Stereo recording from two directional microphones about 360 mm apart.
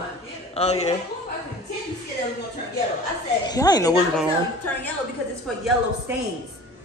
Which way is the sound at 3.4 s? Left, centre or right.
Centre.